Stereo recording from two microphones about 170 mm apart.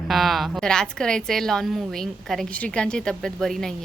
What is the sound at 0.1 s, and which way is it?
A woman's voice, centre (ahead or behind).